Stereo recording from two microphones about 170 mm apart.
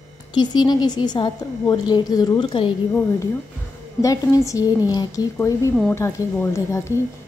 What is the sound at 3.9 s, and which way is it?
A woman's voice, 20° left (ahead or behind).